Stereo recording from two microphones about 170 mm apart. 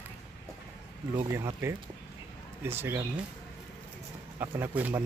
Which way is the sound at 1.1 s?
25° right (ahead or behind).